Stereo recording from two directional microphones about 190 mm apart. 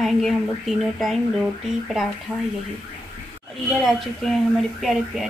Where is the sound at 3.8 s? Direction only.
Centre (ahead or behind).